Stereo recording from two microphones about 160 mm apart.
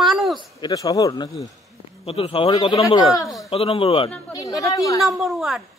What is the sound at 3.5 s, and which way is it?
Speech, 35° left (ahead or behind).